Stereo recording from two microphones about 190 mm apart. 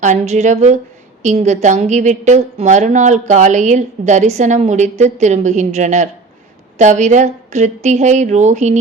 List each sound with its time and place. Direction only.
0.0 s a woman's voice: 40° right (ahead or behind)